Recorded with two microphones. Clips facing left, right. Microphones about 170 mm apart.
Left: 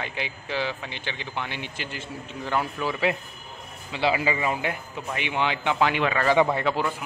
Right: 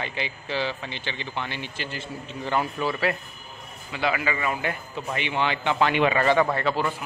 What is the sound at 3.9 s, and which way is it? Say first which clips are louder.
A man's voice: left 2 dB; 25° left (ahead or behind).